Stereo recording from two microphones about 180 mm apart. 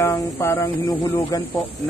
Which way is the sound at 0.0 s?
15° left (ahead or behind).